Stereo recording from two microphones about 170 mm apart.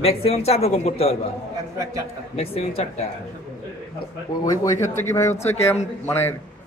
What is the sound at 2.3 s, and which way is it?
Speech, 35° left (ahead or behind).